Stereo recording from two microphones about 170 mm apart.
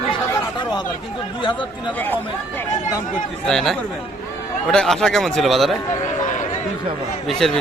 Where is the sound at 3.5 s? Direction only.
Centre (ahead or behind).